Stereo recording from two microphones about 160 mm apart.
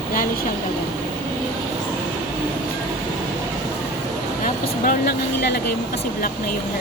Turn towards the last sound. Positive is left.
turn(degrees=85)